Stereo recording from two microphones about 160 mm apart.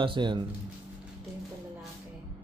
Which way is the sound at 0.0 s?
30° right (ahead or behind).